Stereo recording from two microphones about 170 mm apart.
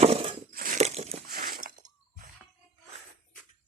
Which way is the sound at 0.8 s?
40° right (ahead or behind).